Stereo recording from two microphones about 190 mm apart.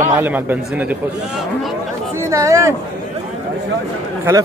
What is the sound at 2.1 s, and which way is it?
Speech, 15° right (ahead or behind).